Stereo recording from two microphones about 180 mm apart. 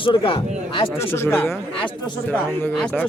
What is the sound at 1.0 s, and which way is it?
Speech, 15° left (ahead or behind).